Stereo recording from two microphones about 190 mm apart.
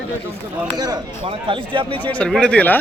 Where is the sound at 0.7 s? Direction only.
20° right (ahead or behind).